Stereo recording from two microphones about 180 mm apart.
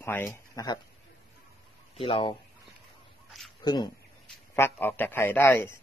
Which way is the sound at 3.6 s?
25° left (ahead or behind).